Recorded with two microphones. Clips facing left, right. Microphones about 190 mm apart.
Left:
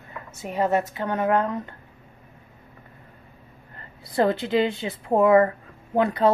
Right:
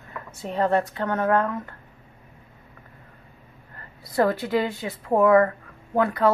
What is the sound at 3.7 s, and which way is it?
A woman's voice, 25° left (ahead or behind).